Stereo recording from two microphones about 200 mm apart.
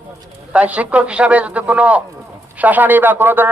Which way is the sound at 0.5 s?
5° right (ahead or behind).